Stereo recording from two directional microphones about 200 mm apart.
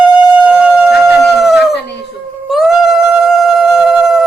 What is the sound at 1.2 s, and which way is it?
Howl, centre (ahead or behind).